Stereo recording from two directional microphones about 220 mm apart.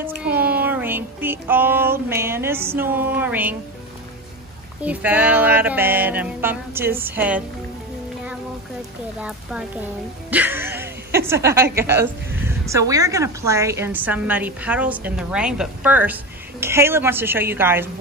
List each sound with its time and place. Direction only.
0.0 s a sound: 10° right (ahead or behind)
4.8 s speech: 5° right (ahead or behind)
9.2 s speech: 5° right (ahead or behind)